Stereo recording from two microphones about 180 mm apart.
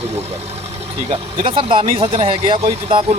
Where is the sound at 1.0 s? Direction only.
30° right (ahead or behind).